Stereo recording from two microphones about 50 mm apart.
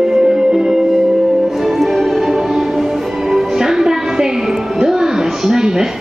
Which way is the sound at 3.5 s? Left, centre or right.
Centre.